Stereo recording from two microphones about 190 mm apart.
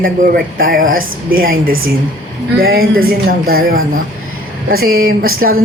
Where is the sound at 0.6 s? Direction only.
50° right (ahead or behind).